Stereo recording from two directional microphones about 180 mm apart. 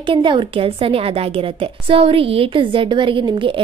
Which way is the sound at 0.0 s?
25° right (ahead or behind).